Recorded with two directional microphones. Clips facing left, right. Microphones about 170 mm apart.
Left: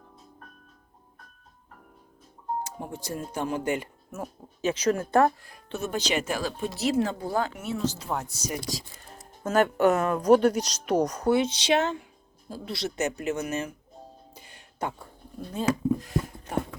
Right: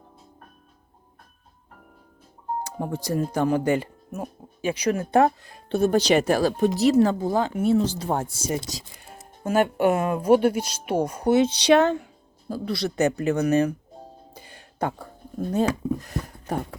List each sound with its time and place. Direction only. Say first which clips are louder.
2.7 s speech: right 8 dB; 40° right (ahead or behind)
4.1 s a woman's voice: right 3 dB; 15° right (ahead or behind); by 7.2 s 40° right (ahead or behind)
7.3 s speech: right 8 dB; 25° right (ahead or behind)
9.4 s speech: right 1 dB; 10° right (ahead or behind)
11.2 s speech: right 4 dB; 30° right (ahead or behind)
11.7 s speech: right 7 dB; 60° right (ahead or behind)
12.5 s speech: right 6 dB; 40° right (ahead or behind)
14.3 s a sound: right 6 dB; 35° right (ahead or behind)
15.6 s speech: right 1 dB; 40° right (ahead or behind)